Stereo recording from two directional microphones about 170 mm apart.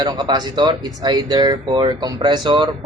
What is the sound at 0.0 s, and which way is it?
A man's voice, 25° right (ahead or behind).